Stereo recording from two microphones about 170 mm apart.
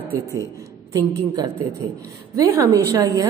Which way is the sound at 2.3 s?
20° right (ahead or behind).